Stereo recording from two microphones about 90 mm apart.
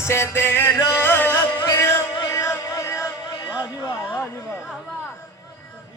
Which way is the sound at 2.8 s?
35° left (ahead or behind).